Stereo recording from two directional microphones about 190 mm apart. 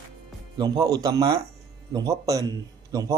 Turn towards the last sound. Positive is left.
turn(degrees=-20)  # may be behind; listen again after turning